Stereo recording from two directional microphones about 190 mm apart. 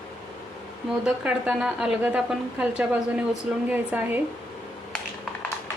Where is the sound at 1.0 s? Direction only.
5° right (ahead or behind).